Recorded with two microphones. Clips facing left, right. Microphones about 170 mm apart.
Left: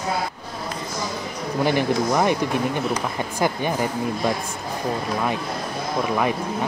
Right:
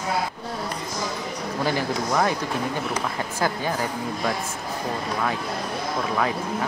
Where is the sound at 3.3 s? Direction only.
20° left (ahead or behind).